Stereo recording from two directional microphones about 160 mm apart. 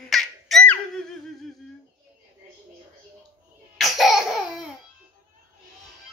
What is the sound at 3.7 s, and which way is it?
Laughter, centre (ahead or behind).